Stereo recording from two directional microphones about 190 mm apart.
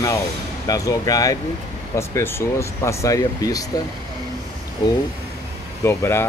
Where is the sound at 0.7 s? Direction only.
20° left (ahead or behind).